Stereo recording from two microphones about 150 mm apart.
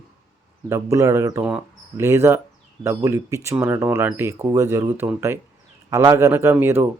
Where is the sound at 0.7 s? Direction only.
20° right (ahead or behind).